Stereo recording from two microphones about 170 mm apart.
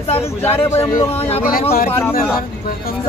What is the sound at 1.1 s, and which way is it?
Speech, 35° left (ahead or behind).